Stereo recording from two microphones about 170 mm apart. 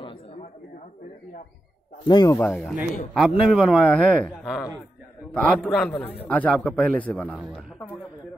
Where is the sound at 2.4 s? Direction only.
5° left (ahead or behind).